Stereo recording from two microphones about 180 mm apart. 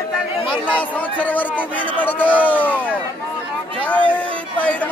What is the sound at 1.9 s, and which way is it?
Speech, 10° left (ahead or behind).